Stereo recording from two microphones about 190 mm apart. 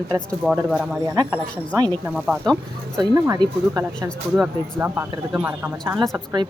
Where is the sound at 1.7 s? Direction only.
25° right (ahead or behind).